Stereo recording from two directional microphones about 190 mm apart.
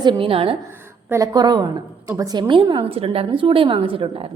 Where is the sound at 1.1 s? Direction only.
20° right (ahead or behind).